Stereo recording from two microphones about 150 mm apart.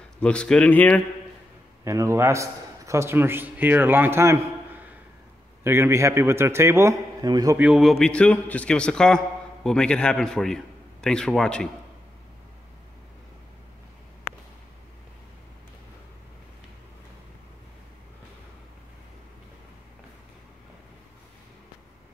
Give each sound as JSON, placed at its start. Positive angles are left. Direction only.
{"t": 0.2, "sound": "speech", "side_deg": 5}
{"t": 1.9, "sound": "a man's voice", "side_deg": -20}
{"t": 7.5, "sound": "a man's voice", "side_deg": -5}